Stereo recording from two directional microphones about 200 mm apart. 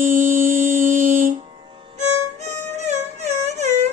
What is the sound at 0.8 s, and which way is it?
Music, 40° right (ahead or behind).